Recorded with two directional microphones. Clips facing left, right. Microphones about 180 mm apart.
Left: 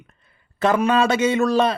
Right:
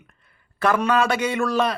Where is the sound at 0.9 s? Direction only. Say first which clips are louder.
Left 3 dB; 25° left (ahead or behind).